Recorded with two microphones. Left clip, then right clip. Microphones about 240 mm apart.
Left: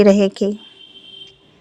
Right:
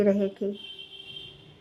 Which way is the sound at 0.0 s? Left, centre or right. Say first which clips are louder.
Left 11 dB; left.